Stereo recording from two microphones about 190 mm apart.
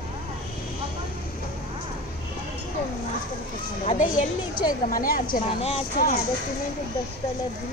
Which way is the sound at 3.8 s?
45° left (ahead or behind).